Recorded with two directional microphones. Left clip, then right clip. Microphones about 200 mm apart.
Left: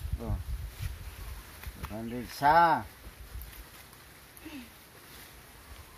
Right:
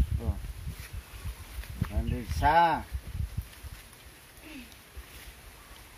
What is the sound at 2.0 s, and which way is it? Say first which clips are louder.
Speech: left 1 dB; 5° right (ahead or behind).